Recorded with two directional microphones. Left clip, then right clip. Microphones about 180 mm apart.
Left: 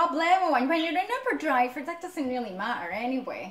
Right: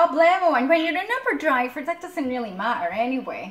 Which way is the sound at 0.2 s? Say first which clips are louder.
Right 5 dB; 10° right (ahead or behind).